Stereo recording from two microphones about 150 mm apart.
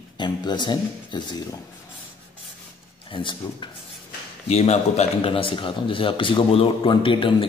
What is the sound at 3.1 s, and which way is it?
Speech, 35° left (ahead or behind).